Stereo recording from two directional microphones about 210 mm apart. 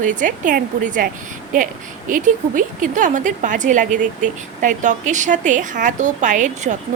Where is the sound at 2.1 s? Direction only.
40° right (ahead or behind).